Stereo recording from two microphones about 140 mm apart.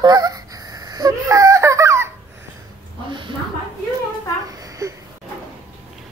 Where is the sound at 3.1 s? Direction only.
35° right (ahead or behind).